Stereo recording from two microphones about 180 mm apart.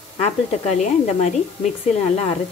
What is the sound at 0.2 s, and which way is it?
A woman's voice, 40° left (ahead or behind).